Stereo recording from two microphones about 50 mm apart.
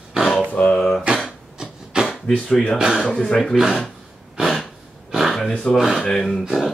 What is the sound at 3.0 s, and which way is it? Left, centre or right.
Speech, centre.